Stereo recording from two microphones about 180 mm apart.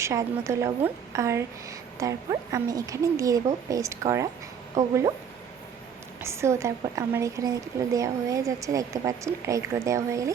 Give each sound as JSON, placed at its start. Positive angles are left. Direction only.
{"t": 0.0, "sound": "a woman's voice", "side_deg": -15}
{"t": 6.2, "sound": "a woman's voice", "side_deg": -15}